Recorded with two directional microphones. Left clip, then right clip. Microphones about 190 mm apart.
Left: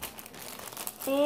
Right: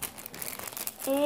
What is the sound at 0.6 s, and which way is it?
Crumpling, 10° right (ahead or behind).